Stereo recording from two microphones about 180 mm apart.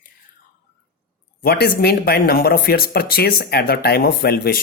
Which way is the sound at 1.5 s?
55° left (ahead or behind).